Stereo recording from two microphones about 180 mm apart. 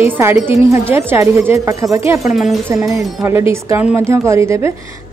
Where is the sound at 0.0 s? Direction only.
10° right (ahead or behind).